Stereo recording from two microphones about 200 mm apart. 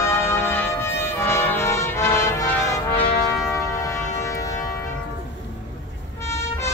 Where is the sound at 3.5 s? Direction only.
15° left (ahead or behind).